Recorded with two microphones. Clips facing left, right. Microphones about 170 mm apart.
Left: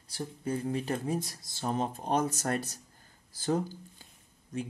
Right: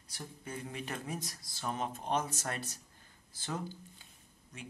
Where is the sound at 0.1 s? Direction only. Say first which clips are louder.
Left 10 dB; 35° left (ahead or behind).